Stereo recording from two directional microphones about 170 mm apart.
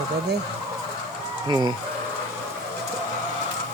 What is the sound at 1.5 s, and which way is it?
Speech, 25° right (ahead or behind).